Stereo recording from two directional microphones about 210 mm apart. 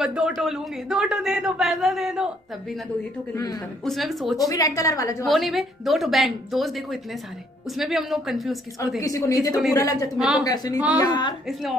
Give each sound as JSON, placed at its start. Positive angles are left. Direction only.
{"t": 0.0, "sound": "a man's voice", "side_deg": 0}
{"t": 3.3, "sound": "a woman's voice", "side_deg": 15}
{"t": 3.8, "sound": "a man's voice", "side_deg": 0}
{"t": 4.4, "sound": "a woman's voice", "side_deg": 15}
{"t": 5.2, "sound": "a man's voice", "side_deg": 0}
{"t": 9.0, "sound": "a woman's voice", "side_deg": 15}
{"t": 10.1, "sound": "a man's voice", "side_deg": 0}
{"t": 10.4, "sound": "a woman's voice", "side_deg": 20}